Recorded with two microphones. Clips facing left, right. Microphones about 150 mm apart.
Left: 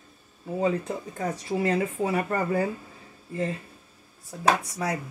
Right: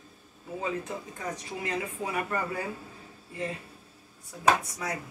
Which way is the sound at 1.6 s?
35° left (ahead or behind).